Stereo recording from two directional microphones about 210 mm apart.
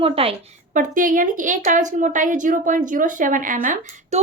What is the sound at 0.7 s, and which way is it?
A woman's voice, 40° right (ahead or behind).